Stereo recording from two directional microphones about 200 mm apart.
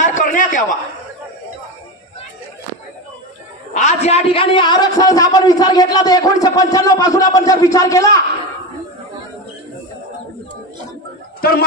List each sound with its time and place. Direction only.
0.0 s a sound: 40° left (ahead or behind)
3.7 s a man's voice: 35° left (ahead or behind); by 8.2 s 15° left (ahead or behind)
11.4 s speech: 50° left (ahead or behind)